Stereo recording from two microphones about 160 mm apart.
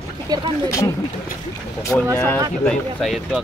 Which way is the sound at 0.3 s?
25° right (ahead or behind).